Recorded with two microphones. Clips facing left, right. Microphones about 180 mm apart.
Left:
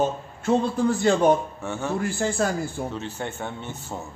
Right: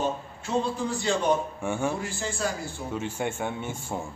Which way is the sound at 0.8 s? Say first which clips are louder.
Left 7 dB; 55° left (ahead or behind).